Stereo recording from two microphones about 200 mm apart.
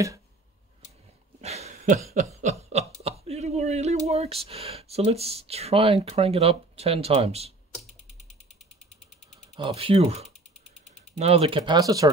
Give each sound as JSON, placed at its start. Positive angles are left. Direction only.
{"t": 1.4, "sound": "a sound", "side_deg": -35}
{"t": 2.7, "sound": "speech", "side_deg": -30}
{"t": 9.6, "sound": "speech", "side_deg": -25}